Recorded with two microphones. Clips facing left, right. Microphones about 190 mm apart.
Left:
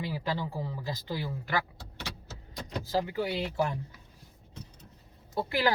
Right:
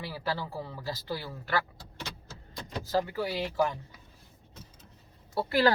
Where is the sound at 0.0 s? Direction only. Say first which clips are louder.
Left 1 dB; 20° left (ahead or behind).